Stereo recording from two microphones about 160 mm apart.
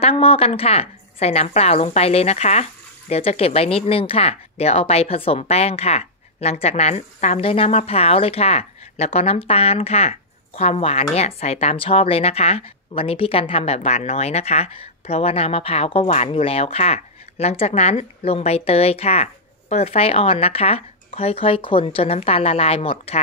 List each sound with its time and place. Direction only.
0.0 s a woman's voice: 35° left (ahead or behind)